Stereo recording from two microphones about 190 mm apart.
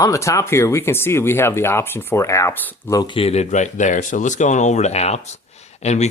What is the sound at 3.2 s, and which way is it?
Speech, 35° left (ahead or behind).